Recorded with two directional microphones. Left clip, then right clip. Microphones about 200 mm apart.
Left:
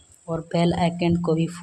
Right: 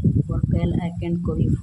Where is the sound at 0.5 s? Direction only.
25° left (ahead or behind).